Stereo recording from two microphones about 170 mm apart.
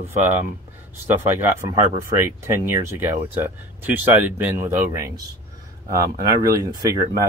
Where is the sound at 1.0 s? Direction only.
10° right (ahead or behind).